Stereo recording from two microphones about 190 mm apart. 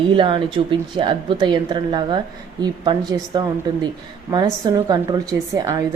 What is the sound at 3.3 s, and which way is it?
Speech, 25° right (ahead or behind).